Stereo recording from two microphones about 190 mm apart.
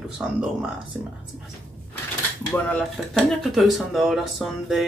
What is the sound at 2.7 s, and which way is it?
Speech, centre (ahead or behind).